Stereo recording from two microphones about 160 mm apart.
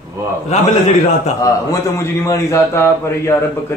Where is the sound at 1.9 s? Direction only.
20° left (ahead or behind).